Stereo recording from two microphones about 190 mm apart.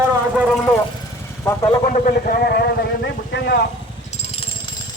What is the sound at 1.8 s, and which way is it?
Speech, 45° left (ahead or behind).